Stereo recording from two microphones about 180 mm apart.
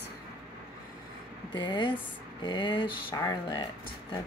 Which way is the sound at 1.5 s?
25° left (ahead or behind).